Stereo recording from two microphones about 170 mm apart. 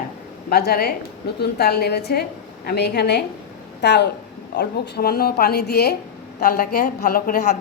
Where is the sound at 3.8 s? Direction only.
90° left.